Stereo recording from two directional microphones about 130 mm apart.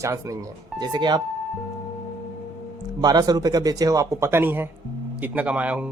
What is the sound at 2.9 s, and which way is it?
A man's voice, 30° right (ahead or behind).